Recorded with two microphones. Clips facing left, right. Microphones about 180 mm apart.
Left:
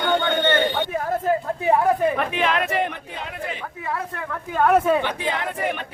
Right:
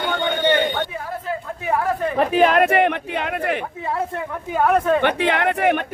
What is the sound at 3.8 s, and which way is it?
Speech, 25° right (ahead or behind).